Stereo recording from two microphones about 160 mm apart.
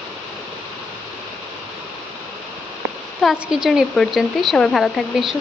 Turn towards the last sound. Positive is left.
turn(degrees=0)  # may be behind; listen again after turning